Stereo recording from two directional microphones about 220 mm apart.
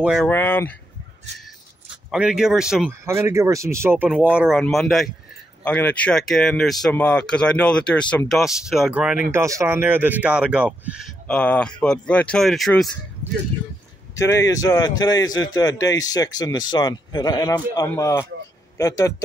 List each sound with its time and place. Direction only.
0.0 s speech: 5° right (ahead or behind)
0.3 s speech: 10° left (ahead or behind)
2.0 s speech: 5° right (ahead or behind)
14.1 s speech: 15° left (ahead or behind)